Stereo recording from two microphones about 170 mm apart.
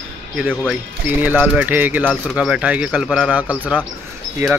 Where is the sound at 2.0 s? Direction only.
Centre (ahead or behind).